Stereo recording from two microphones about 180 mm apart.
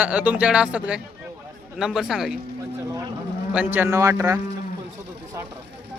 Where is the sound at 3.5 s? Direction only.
10° right (ahead or behind).